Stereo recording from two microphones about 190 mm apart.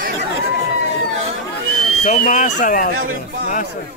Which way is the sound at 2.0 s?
45° left (ahead or behind).